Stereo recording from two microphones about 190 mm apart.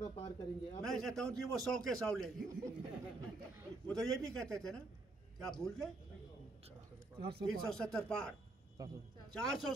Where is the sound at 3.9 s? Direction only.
Centre (ahead or behind).